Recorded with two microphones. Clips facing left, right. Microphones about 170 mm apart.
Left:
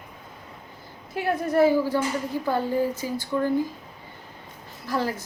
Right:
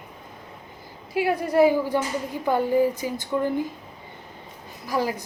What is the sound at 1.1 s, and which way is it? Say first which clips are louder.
A woman's voice: right 2 dB; 10° right (ahead or behind).